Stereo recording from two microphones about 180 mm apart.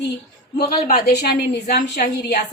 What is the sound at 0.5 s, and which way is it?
A woman's voice, 55° left (ahead or behind).